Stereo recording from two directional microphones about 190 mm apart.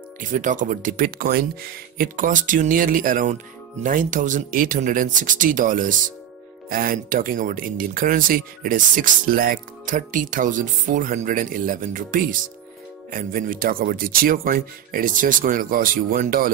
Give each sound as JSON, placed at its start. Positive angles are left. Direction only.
{"t": 0.2, "sound": "speech", "side_deg": -40}